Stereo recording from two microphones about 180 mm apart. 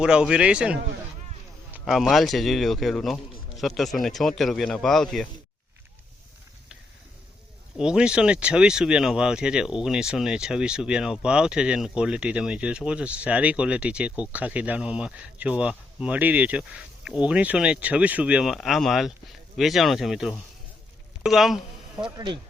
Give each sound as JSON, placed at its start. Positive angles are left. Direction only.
{"t": 0.0, "sound": "speech", "side_deg": -5}
{"t": 7.8, "sound": "speech", "side_deg": -5}
{"t": 22.0, "sound": "speech", "side_deg": -25}